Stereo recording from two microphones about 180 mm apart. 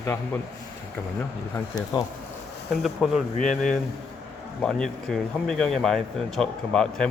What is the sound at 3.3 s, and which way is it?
Speech, 45° left (ahead or behind).